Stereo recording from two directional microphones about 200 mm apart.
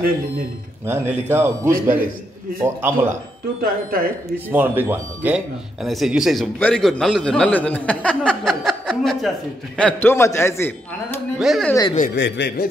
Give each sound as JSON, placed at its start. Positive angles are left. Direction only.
{"t": 0.8, "sound": "a man's voice", "side_deg": -10}
{"t": 3.6, "sound": "speech", "side_deg": -45}
{"t": 4.5, "sound": "a man's voice", "side_deg": -10}
{"t": 11.3, "sound": "speech", "side_deg": 0}
{"t": 12.1, "sound": "speech", "side_deg": 60}